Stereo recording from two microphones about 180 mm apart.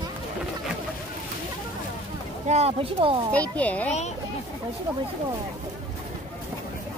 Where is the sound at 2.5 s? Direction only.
35° right (ahead or behind).